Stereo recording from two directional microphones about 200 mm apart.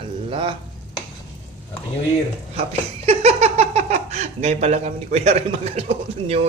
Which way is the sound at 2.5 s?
30° right (ahead or behind).